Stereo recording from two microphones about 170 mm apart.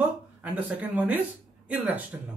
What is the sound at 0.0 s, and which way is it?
Speech, 10° right (ahead or behind).